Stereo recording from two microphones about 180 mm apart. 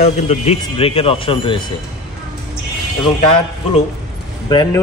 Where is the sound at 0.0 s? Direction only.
35° left (ahead or behind).